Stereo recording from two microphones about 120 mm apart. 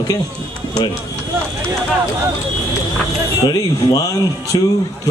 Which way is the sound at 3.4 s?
30° left (ahead or behind).